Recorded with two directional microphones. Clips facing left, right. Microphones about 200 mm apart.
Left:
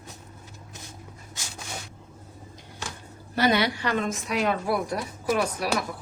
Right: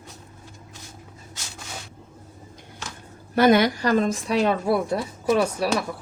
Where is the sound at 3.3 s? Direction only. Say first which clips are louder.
Right 6 dB; 50° right (ahead or behind); by 5.7 s 25° right (ahead or behind).